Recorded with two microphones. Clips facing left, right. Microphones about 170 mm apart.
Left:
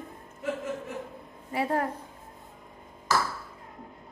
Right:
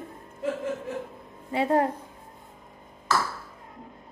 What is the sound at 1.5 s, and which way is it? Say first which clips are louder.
Speech: right 5 dB; 25° right (ahead or behind).